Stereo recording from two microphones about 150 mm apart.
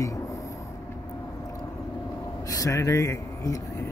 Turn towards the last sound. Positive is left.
turn(degrees=20)  # may be behind; listen again after turning